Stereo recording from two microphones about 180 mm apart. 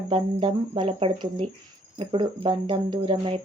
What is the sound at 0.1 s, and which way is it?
Speech, 30° right (ahead or behind).